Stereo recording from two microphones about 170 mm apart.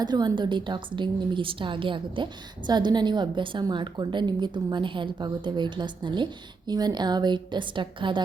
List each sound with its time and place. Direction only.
0.0 s a woman's voice: 25° right (ahead or behind)